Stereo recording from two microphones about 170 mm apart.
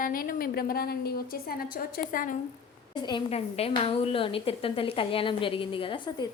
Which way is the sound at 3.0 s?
30° left (ahead or behind).